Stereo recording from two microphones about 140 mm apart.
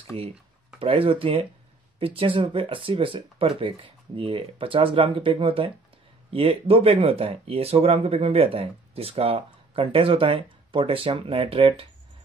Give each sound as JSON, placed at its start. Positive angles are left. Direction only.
{"t": 0.1, "sound": "speech", "side_deg": -45}